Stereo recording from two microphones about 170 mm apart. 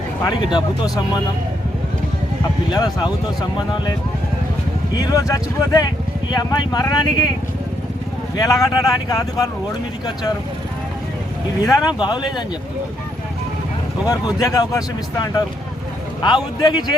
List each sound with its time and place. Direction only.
0.2 s speech: 25° left (ahead or behind)
2.7 s speech: 25° left (ahead or behind)
4.9 s speech: 20° left (ahead or behind)
8.4 s speech: 20° left (ahead or behind)
11.6 s speech: 20° left (ahead or behind)
14.1 s speech: 20° left (ahead or behind)